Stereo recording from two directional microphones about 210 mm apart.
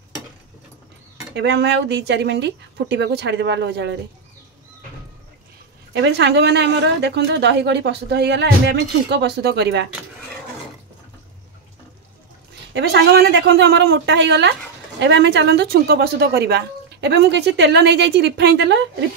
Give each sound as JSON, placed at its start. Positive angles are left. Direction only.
{"t": 1.3, "sound": "speech", "side_deg": -55}
{"t": 5.9, "sound": "a woman's voice", "side_deg": -55}
{"t": 12.7, "sound": "a woman's voice", "side_deg": -55}